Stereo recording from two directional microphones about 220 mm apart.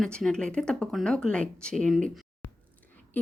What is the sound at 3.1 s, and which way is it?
Speech, 5° left (ahead or behind).